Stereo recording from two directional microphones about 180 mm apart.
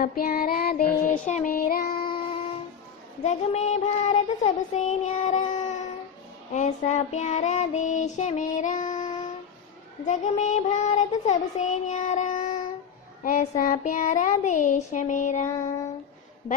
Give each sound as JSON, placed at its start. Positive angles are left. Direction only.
{"t": 0.0, "sound": "child singing", "side_deg": 55}
{"t": 1.2, "sound": "child singing", "side_deg": 45}
{"t": 2.0, "sound": "music", "side_deg": 30}
{"t": 3.2, "sound": "child singing", "side_deg": 40}
{"t": 10.0, "sound": "child singing", "side_deg": 40}